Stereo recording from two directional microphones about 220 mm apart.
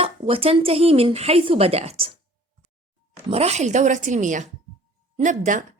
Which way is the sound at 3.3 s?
30° right (ahead or behind).